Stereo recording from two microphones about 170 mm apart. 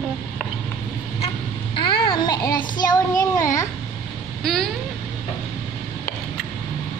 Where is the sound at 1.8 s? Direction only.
30° left (ahead or behind).